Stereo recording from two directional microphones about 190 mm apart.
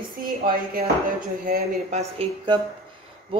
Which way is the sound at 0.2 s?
50° right (ahead or behind).